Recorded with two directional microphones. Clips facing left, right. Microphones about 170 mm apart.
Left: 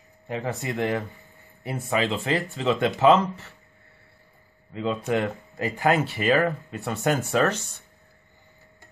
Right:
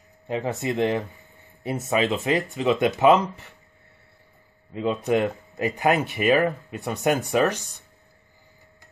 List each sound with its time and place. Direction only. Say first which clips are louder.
0.3 s speech: right 3 dB; 20° right (ahead or behind)
4.7 s speech: right 3 dB; 20° right (ahead or behind)